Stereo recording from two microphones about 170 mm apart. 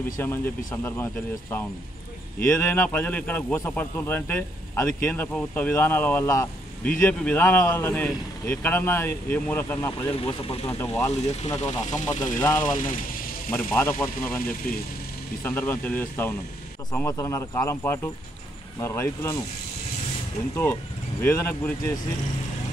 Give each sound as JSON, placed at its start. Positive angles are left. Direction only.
{"t": 0.2, "sound": "speech", "side_deg": 15}
{"t": 2.4, "sound": "speech", "side_deg": 10}
{"t": 9.8, "sound": "speech", "side_deg": 30}
{"t": 10.7, "sound": "speech", "side_deg": 15}
{"t": 12.7, "sound": "speech", "side_deg": 55}
{"t": 13.5, "sound": "speech", "side_deg": 10}
{"t": 15.4, "sound": "speech", "side_deg": 10}
{"t": 21.2, "sound": "speech", "side_deg": 15}